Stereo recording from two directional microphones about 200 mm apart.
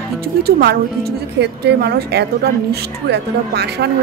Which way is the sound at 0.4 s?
55° right (ahead or behind).